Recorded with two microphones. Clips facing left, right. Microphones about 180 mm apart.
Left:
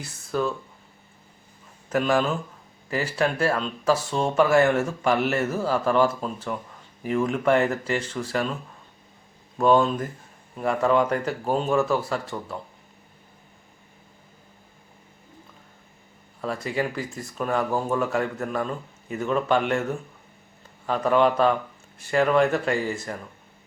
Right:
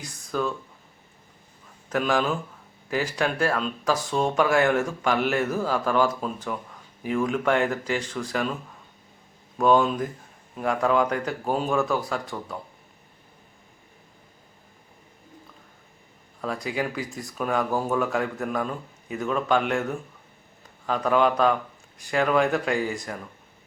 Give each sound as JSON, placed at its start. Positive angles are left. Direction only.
{"t": 0.0, "sound": "speech", "side_deg": 5}
{"t": 1.9, "sound": "speech", "side_deg": 5}
{"t": 9.6, "sound": "speech", "side_deg": 0}
{"t": 16.4, "sound": "speech", "side_deg": 0}